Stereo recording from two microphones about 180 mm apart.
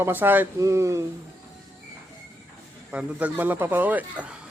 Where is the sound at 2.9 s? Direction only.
10° right (ahead or behind).